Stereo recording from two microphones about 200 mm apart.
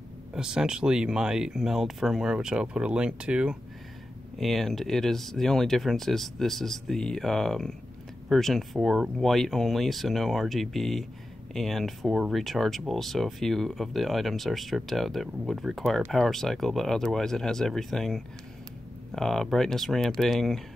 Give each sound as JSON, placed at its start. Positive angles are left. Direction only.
{"t": 0.3, "sound": "speech", "side_deg": -5}